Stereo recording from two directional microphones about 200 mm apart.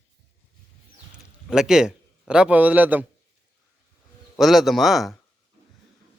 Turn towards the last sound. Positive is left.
turn(degrees=0)  # may be behind; listen again after turning